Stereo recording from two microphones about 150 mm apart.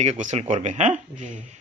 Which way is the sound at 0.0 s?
50° right (ahead or behind).